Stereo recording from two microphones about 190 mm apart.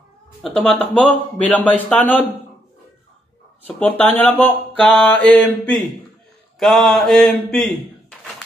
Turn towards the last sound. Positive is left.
turn(degrees=0)  # may be behind; listen again after turning